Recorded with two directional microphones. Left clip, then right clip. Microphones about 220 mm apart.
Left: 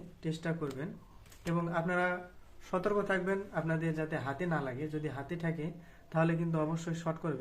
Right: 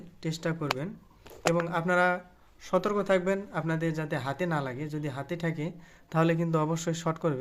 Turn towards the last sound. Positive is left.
turn(degrees=-50)  # may be behind; listen again after turning